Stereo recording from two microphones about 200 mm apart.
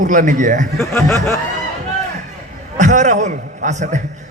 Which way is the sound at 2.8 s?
40° right (ahead or behind).